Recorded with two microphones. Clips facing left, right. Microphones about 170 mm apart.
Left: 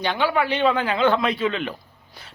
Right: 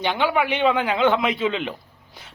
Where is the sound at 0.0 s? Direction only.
15° right (ahead or behind).